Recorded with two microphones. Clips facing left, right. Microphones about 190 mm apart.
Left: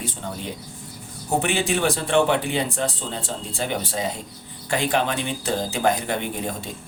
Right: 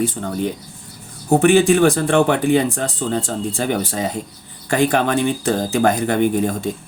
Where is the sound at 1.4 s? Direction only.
45° right (ahead or behind).